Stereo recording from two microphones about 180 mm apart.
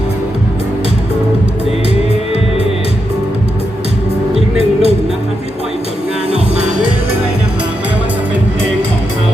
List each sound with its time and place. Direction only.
4.4 s music: 35° right (ahead or behind)